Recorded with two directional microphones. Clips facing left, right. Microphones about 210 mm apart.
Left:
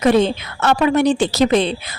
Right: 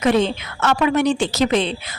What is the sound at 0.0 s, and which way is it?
A woman's voice, 40° left (ahead or behind).